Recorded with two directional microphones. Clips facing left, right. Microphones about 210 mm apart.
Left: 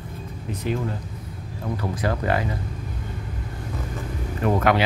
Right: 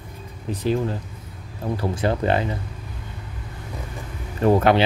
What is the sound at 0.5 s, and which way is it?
Speech, 30° right (ahead or behind).